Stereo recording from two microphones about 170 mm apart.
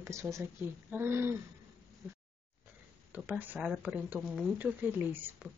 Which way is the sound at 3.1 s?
10° right (ahead or behind).